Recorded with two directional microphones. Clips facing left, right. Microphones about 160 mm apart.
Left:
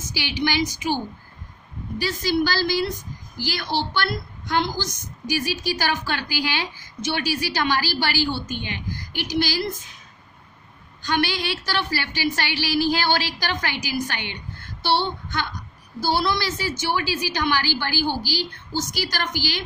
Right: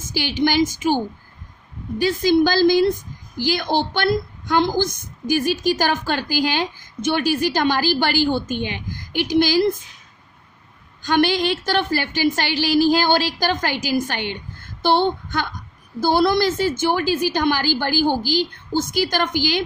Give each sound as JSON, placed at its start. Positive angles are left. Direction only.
{"t": 0.0, "sound": "a woman's voice", "side_deg": -50}
{"t": 11.1, "sound": "a woman's voice", "side_deg": -50}